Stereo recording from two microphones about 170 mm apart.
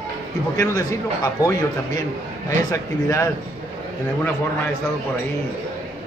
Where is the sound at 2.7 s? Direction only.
20° left (ahead or behind).